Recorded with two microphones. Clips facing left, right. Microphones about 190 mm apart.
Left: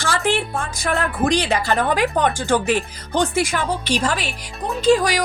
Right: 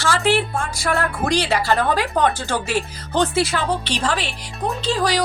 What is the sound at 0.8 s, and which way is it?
A woman's voice, 20° left (ahead or behind).